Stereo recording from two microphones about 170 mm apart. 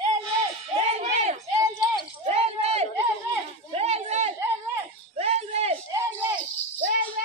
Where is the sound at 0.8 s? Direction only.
40° right (ahead or behind).